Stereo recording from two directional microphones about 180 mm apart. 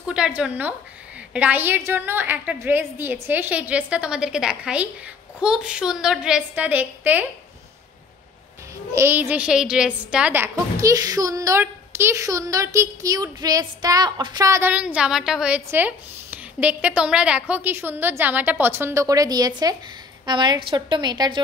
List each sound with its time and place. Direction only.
0.1 s a woman's voice: 5° right (ahead or behind)
8.9 s a woman's voice: 10° right (ahead or behind)